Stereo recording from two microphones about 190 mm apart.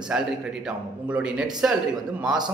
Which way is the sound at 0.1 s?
5° right (ahead or behind).